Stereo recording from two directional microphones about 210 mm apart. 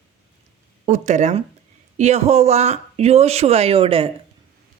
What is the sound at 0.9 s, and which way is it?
Speech, 35° right (ahead or behind).